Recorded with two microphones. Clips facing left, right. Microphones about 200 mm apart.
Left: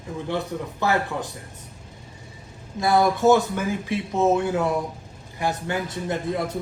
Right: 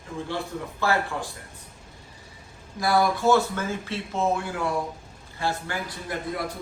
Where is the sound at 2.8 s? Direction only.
20° left (ahead or behind).